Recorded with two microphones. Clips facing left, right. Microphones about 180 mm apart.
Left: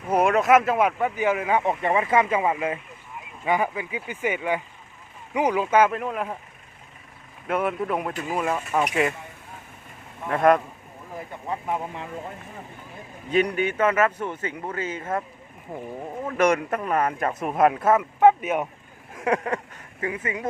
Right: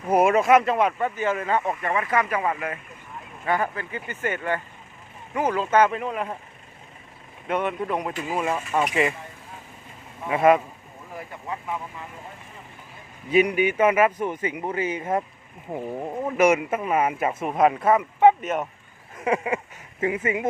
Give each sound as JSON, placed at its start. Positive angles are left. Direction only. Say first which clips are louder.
{"t": 0.1, "sound": "speech", "louder": "right 1 dB", "side_deg": -5}
{"t": 1.8, "sound": "speech", "louder": "left 3 dB", "side_deg": 25}
{"t": 7.4, "sound": "speech", "louder": "left 1 dB", "side_deg": 5}
{"t": 10.2, "sound": "speech", "louder": "right 1 dB", "side_deg": -5}
{"t": 11.4, "sound": "speech", "louder": "left 3 dB", "side_deg": 30}
{"t": 13.3, "sound": "speech", "louder": "right 3 dB", "side_deg": -10}
{"t": 19.1, "sound": "speech", "louder": "even", "side_deg": -5}
{"t": 20.0, "sound": "speech", "louder": "right 4 dB", "side_deg": -25}